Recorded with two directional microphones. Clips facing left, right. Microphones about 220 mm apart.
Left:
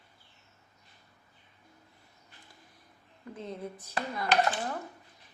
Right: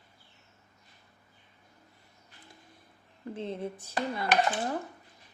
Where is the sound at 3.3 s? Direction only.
30° right (ahead or behind).